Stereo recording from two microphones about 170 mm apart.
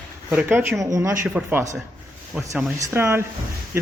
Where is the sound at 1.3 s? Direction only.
10° right (ahead or behind).